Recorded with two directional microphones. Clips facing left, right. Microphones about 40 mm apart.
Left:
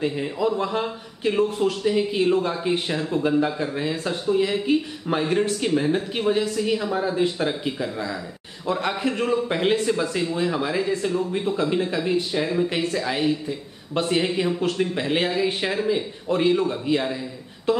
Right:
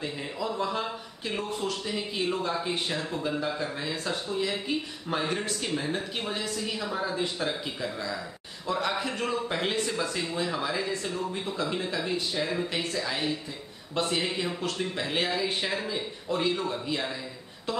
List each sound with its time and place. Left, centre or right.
0.0 s speech: left